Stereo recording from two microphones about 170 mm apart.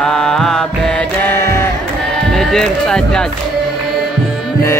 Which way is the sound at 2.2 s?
5° left (ahead or behind).